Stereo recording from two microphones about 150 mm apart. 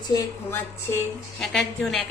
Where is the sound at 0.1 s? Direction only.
15° left (ahead or behind).